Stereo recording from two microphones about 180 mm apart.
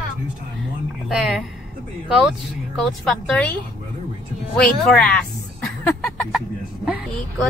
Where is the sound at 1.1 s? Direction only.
Centre (ahead or behind).